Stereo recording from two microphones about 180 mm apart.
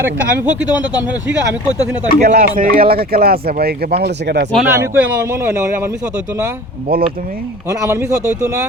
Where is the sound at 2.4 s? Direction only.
55° right (ahead or behind).